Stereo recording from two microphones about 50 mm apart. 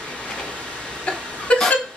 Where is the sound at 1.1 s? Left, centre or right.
Left.